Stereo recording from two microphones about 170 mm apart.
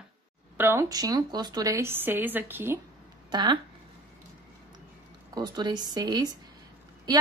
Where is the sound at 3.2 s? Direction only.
25° right (ahead or behind).